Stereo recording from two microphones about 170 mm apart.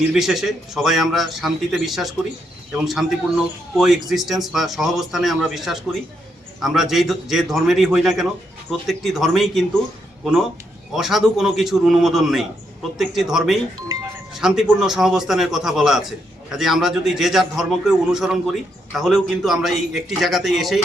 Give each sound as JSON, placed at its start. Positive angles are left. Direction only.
{"t": 0.1, "sound": "a man's voice", "side_deg": 0}
{"t": 10.9, "sound": "a man's voice", "side_deg": 0}
{"t": 13.7, "sound": "speech", "side_deg": -20}
{"t": 14.3, "sound": "a man's voice", "side_deg": -5}